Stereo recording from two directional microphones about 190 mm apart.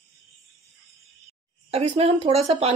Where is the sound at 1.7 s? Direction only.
30° right (ahead or behind).